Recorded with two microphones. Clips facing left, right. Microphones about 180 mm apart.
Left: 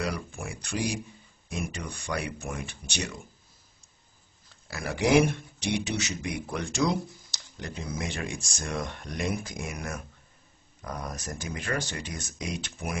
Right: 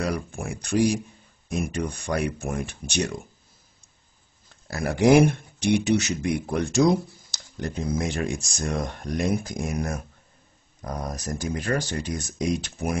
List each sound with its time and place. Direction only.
0.0 s a sound: 45° right (ahead or behind)
1.6 s speech: 45° right (ahead or behind)
4.6 s speech: 50° right (ahead or behind)